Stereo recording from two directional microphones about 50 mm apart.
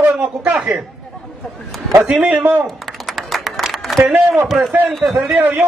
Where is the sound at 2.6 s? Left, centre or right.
Centre.